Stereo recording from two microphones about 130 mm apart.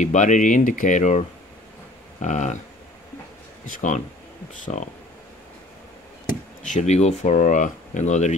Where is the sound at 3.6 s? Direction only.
75° left (ahead or behind).